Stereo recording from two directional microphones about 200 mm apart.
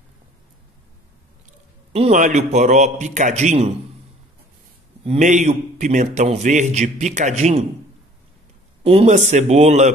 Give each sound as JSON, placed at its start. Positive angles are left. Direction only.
{"t": 1.9, "sound": "a man's voice", "side_deg": -35}
{"t": 5.0, "sound": "a man's voice", "side_deg": -35}
{"t": 8.8, "sound": "a man's voice", "side_deg": -30}